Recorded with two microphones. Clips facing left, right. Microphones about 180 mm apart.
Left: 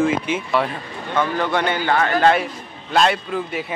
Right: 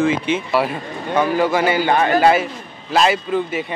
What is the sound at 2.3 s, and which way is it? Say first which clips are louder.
A man's voice: right 2 dB; centre (ahead or behind).